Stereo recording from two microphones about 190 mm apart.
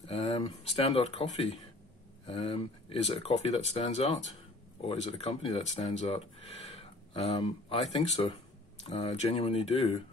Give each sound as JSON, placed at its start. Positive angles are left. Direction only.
{"t": 0.0, "sound": "speech", "side_deg": 30}
{"t": 8.8, "sound": "speech", "side_deg": 35}